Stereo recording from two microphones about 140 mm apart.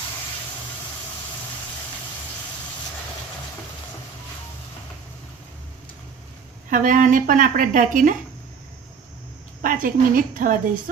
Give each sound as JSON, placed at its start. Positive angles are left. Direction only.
{"t": 6.7, "sound": "a woman's voice", "side_deg": -70}
{"t": 9.6, "sound": "a woman's voice", "side_deg": -75}